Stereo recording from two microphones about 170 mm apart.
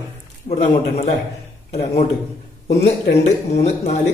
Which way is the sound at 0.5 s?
40° left (ahead or behind).